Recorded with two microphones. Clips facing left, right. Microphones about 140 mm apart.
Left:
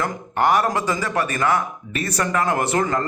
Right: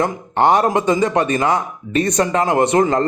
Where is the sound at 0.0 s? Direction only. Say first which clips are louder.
Right 5 dB; 25° right (ahead or behind).